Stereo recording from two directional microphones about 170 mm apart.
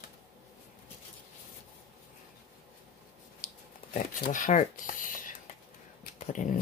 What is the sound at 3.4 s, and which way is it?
Dog, 50° left (ahead or behind).